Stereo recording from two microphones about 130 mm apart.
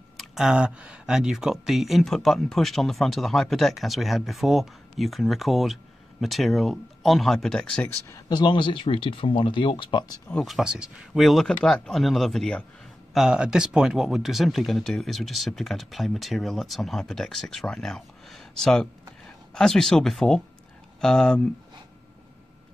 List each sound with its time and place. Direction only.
0.2 s speech: 5° right (ahead or behind)
8.1 s speech: 35° left (ahead or behind)
10.3 s speech: centre (ahead or behind)